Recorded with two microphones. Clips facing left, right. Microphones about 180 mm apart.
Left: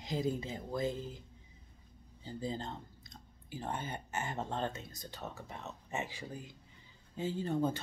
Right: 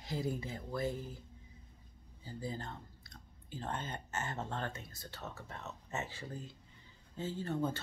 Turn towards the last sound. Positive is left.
turn(degrees=15)  # may be behind; listen again after turning